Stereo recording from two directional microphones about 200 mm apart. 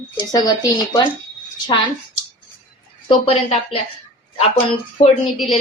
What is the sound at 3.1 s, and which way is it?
A woman's voice, 25° left (ahead or behind).